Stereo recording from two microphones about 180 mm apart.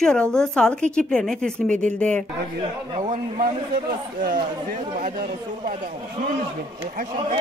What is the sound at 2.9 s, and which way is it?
Speech, 40° right (ahead or behind).